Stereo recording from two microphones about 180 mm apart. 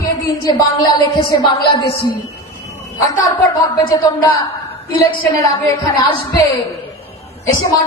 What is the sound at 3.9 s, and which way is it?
Speech, 20° left (ahead or behind).